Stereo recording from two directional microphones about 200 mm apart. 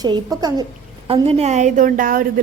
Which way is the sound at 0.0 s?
20° right (ahead or behind).